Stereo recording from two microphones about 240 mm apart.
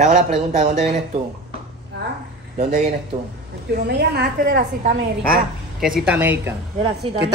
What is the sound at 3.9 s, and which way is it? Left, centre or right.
A woman's voice, right.